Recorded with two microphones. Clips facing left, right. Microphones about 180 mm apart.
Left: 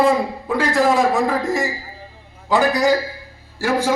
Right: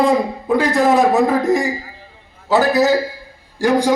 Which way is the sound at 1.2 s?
20° right (ahead or behind).